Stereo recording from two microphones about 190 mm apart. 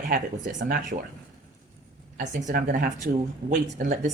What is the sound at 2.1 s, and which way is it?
Speech, 40° right (ahead or behind).